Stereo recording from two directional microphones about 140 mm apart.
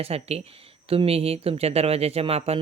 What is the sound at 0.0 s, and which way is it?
Speech, 45° right (ahead or behind).